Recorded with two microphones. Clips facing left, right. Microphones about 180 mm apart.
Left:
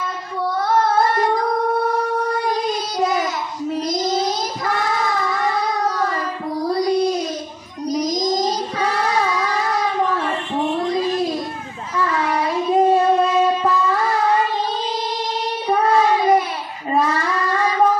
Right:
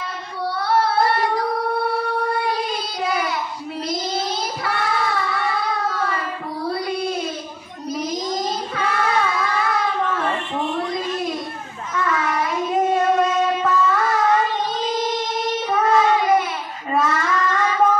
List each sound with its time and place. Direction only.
0.6 s singing: 45° left (ahead or behind)
2.4 s child singing: 45° left (ahead or behind)
13.6 s music: 35° left (ahead or behind)
15.7 s child singing: 35° left (ahead or behind)